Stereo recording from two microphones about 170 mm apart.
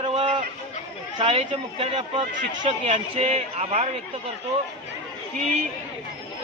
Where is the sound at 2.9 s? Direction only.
40° right (ahead or behind).